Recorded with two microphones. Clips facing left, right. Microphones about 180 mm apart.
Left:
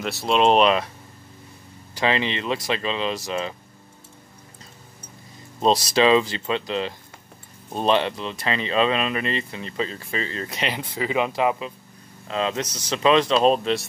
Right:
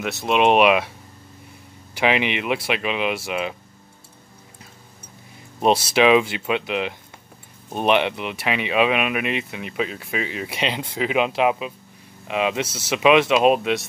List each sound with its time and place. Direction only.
0.3 s speech: 10° right (ahead or behind)
2.0 s speech: 15° right (ahead or behind)
5.6 s speech: 10° right (ahead or behind)
10.7 s speech: 20° right (ahead or behind)
12.6 s speech: 25° right (ahead or behind)
12.9 s speech: 10° right (ahead or behind)